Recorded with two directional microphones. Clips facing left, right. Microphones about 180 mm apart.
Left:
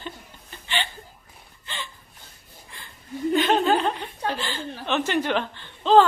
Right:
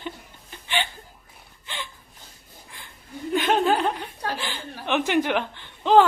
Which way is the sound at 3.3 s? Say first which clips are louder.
Even; 10° right (ahead or behind).